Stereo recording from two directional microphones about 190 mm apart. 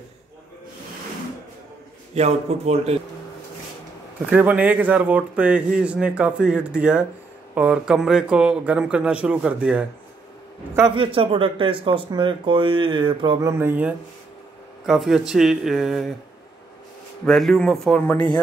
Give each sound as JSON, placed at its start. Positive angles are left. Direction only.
{"t": 2.1, "sound": "speech", "side_deg": -35}
{"t": 4.3, "sound": "a man's voice", "side_deg": -5}
{"t": 11.0, "sound": "a man's voice", "side_deg": -30}
{"t": 17.3, "sound": "a man's voice", "side_deg": 0}